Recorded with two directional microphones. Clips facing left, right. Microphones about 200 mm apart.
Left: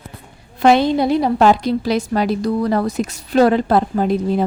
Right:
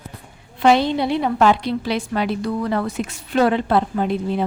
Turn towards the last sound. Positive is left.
turn(degrees=40)  # may be behind; listen again after turning